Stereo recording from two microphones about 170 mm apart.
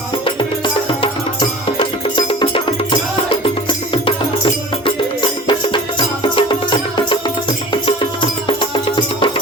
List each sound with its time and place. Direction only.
0.3 s music: 30° left (ahead or behind)